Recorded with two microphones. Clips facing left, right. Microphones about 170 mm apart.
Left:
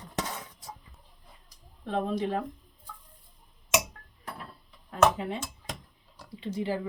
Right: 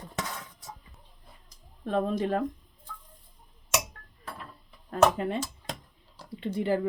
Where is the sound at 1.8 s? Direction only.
45° right (ahead or behind).